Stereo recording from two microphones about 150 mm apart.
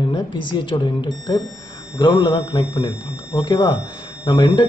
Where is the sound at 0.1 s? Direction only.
30° left (ahead or behind).